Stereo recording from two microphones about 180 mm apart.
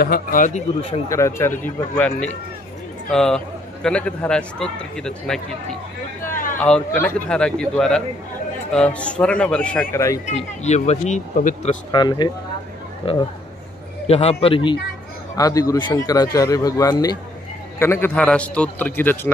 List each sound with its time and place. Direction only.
0.0 s a man's voice: 55° left (ahead or behind)
1.0 s a man's voice: 15° left (ahead or behind)
6.6 s a man's voice: 5° left (ahead or behind)
10.2 s speech: 40° left (ahead or behind)
11.9 s a man's voice: 25° left (ahead or behind)